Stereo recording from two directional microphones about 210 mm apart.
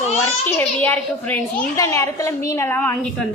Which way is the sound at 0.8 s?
5° left (ahead or behind).